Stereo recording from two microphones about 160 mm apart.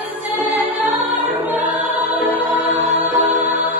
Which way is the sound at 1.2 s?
10° right (ahead or behind).